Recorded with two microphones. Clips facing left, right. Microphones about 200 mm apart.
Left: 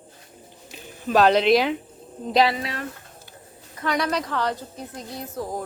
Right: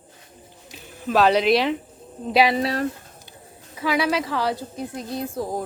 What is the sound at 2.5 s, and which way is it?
Speech, 35° right (ahead or behind).